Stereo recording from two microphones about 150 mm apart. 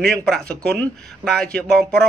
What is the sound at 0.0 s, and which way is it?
Speech, 5° left (ahead or behind).